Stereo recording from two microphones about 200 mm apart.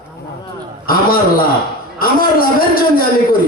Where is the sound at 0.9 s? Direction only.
45° left (ahead or behind).